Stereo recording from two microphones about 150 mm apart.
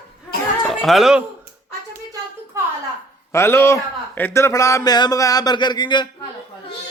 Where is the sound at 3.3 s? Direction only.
15° left (ahead or behind).